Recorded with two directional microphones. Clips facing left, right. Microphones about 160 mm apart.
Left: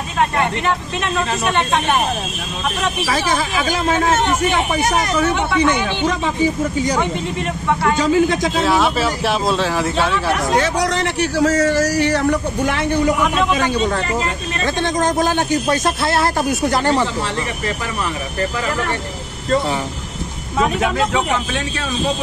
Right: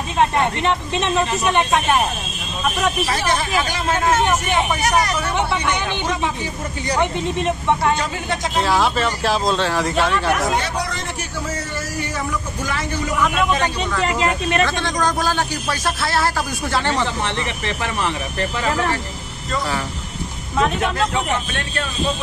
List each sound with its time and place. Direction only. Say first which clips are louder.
0.9 s speech: right 1 dB; 20° right (ahead or behind)
8.0 s speech: left 9 dB; 90° left
8.6 s speech: left 1 dB; centre (ahead or behind)
10.5 s a man's voice: left 6 dB; 90° left; by 12.8 s 65° left (ahead or behind)
13.8 s speech: even; 40° left (ahead or behind)
14.9 s speech: left 3 dB; 20° left (ahead or behind)